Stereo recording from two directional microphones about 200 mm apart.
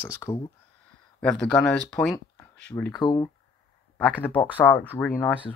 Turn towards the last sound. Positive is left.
turn(degrees=10)  # may be behind; listen again after turning